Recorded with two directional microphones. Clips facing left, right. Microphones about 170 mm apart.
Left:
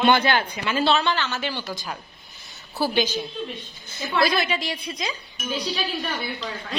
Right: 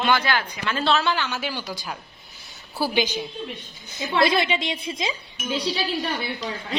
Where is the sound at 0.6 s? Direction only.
5° left (ahead or behind).